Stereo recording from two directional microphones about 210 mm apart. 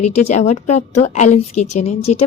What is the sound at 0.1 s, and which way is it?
A woman's voice, 35° left (ahead or behind).